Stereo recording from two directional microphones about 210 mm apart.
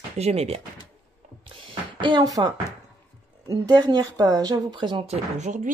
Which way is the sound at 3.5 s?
20° right (ahead or behind).